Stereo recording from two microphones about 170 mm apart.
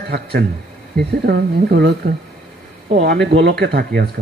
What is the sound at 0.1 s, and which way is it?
Speech, 70° right (ahead or behind).